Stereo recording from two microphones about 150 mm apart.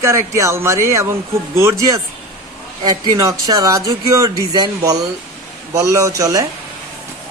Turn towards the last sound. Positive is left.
turn(degrees=-20)  # may be behind; listen again after turning